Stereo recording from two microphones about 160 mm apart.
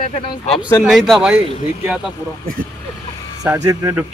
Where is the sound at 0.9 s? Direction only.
Centre (ahead or behind).